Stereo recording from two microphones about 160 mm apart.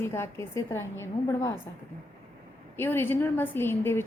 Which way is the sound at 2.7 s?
15° left (ahead or behind).